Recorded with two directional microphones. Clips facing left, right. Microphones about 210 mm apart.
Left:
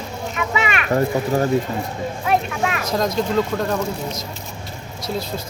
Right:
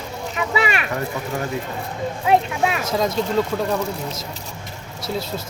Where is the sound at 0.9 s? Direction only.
40° left (ahead or behind).